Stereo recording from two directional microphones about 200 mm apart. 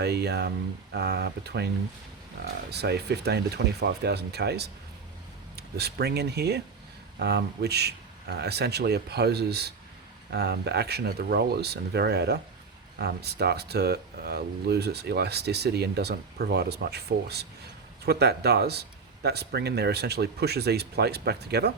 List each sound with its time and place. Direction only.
0.0 s speech: 55° right (ahead or behind)